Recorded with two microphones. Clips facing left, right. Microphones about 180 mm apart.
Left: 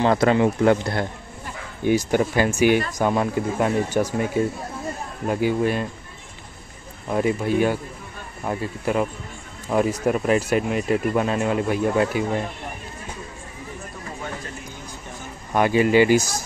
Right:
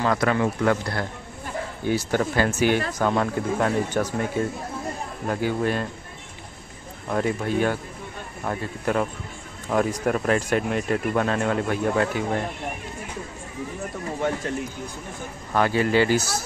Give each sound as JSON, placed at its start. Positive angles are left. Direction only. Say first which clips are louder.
{"t": 0.0, "sound": "speech", "louder": "left 4 dB", "side_deg": 25}
{"t": 7.1, "sound": "speech", "louder": "left 3 dB", "side_deg": 10}
{"t": 15.5, "sound": "speech", "louder": "left 3 dB", "side_deg": 15}